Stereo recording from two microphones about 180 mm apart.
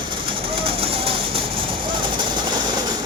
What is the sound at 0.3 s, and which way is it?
Bird, 30° right (ahead or behind).